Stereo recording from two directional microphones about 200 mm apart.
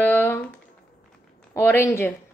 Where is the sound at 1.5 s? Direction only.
15° left (ahead or behind).